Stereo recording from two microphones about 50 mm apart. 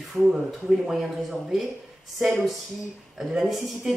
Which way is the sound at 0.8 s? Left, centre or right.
Centre.